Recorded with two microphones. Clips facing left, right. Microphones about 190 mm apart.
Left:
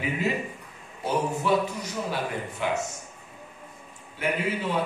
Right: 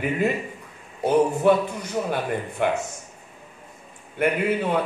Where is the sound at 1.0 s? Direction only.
55° right (ahead or behind).